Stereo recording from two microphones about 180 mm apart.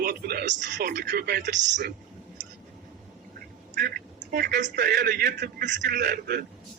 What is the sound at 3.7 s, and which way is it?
A man's voice, 60° right (ahead or behind).